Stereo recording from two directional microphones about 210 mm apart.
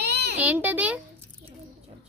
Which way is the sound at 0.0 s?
50° right (ahead or behind).